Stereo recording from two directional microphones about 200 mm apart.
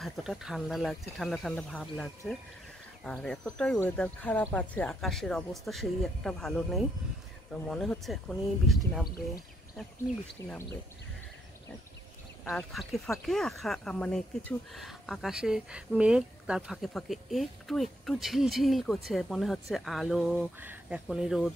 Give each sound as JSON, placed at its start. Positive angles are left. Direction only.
{"t": 0.0, "sound": "speech", "side_deg": 0}
{"t": 10.4, "sound": "speech", "side_deg": 15}
{"t": 12.4, "sound": "speech", "side_deg": 5}